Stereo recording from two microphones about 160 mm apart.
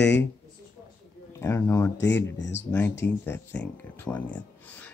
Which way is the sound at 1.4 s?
15° left (ahead or behind).